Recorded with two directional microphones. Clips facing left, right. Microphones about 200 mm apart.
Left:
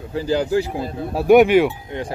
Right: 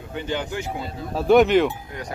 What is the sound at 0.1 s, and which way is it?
Speech, 35° left (ahead or behind).